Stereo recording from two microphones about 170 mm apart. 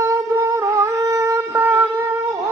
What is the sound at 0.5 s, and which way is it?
Music, 20° right (ahead or behind).